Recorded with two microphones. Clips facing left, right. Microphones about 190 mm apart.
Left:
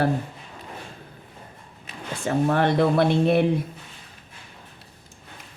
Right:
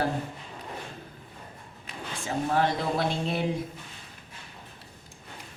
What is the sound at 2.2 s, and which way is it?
Speech, 65° left (ahead or behind).